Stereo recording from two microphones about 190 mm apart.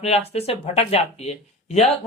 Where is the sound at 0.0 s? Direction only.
35° left (ahead or behind).